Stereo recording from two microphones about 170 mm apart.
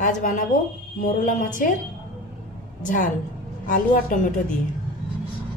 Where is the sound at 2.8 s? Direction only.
50° left (ahead or behind).